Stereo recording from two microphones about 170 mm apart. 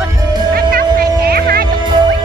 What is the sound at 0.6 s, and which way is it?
Music, 60° right (ahead or behind).